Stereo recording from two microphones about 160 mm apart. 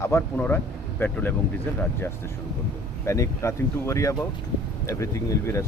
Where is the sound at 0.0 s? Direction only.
15° left (ahead or behind).